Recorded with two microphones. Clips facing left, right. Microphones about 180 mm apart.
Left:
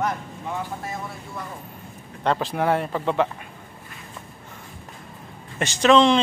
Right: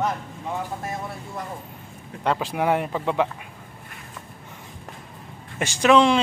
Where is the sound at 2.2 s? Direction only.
10° right (ahead or behind).